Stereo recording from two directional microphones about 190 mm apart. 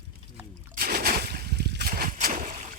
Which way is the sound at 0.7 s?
55° right (ahead or behind).